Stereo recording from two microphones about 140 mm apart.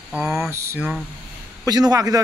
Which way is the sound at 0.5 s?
20° right (ahead or behind).